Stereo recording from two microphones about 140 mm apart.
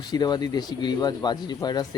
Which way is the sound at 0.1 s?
30° left (ahead or behind).